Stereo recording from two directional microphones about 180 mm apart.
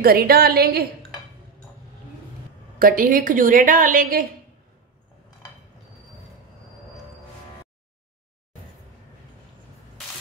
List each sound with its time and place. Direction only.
0.0 s a woman's voice: 55° right (ahead or behind)
2.8 s a woman's voice: 50° right (ahead or behind)